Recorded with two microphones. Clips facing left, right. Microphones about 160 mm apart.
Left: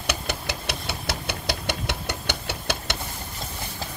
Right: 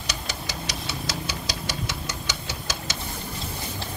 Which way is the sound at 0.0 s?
60° left (ahead or behind).